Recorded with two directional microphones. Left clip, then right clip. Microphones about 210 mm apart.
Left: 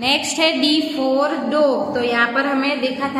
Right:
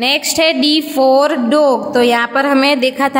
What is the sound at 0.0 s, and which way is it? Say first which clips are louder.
A woman's voice: right 4 dB; 40° right (ahead or behind).